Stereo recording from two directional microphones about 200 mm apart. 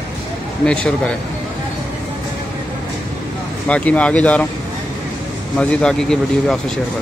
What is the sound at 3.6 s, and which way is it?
Speech, 5° left (ahead or behind).